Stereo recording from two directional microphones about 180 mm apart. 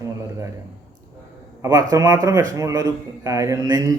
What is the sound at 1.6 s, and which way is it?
A man's voice, 20° right (ahead or behind).